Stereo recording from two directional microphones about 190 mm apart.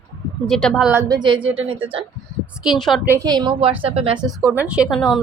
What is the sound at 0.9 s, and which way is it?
A woman's voice, 20° right (ahead or behind).